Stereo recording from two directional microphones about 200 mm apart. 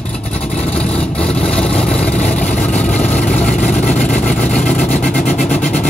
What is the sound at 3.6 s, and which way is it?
Vehicle, 40° left (ahead or behind).